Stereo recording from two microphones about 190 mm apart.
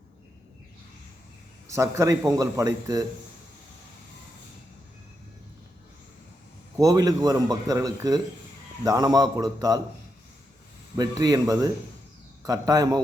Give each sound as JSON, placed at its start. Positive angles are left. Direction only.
{"t": 1.6, "sound": "a man's voice", "side_deg": -15}
{"t": 6.7, "sound": "a man's voice", "side_deg": -20}
{"t": 10.9, "sound": "a man's voice", "side_deg": -20}